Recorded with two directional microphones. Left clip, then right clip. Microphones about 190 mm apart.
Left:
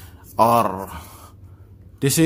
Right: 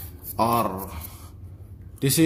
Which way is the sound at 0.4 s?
30° left (ahead or behind).